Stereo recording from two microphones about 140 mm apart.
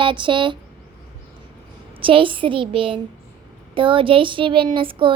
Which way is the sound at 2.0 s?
40° right (ahead or behind).